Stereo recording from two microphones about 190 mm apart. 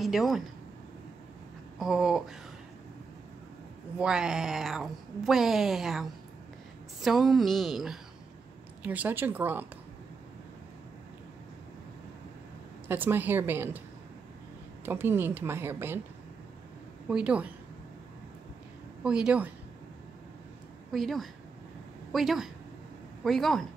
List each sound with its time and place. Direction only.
0.0 s speech: centre (ahead or behind)
1.8 s speech: centre (ahead or behind)
4.0 s a woman's voice: 5° right (ahead or behind)
12.8 s a woman's voice: 10° right (ahead or behind)
14.9 s a woman's voice: 10° right (ahead or behind)
17.1 s speech: 5° right (ahead or behind)
19.0 s speech: 5° right (ahead or behind)
20.9 s speech: centre (ahead or behind)